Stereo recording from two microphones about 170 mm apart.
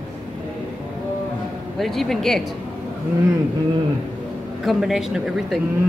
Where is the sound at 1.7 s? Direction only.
Centre (ahead or behind).